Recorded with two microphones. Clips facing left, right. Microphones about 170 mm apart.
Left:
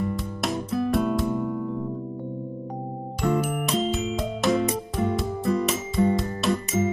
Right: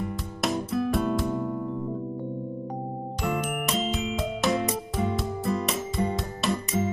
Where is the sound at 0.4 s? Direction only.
Centre (ahead or behind).